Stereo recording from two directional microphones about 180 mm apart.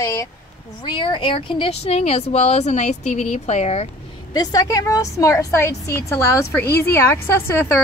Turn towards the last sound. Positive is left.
turn(degrees=15)  # may be behind; listen again after turning